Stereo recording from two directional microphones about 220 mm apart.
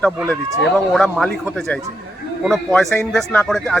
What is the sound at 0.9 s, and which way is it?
A man's voice, centre (ahead or behind).